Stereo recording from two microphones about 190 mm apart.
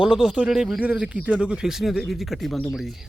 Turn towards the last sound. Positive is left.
turn(degrees=0)  # may be behind; listen again after turning